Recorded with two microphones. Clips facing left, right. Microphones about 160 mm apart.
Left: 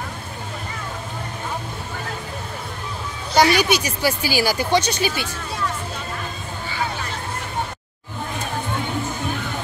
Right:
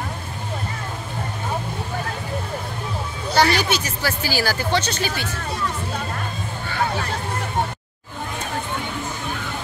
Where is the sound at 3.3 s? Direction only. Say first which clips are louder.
Left 2 dB; 15° left (ahead or behind).